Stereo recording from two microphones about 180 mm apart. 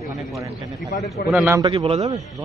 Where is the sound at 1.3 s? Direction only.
10° right (ahead or behind).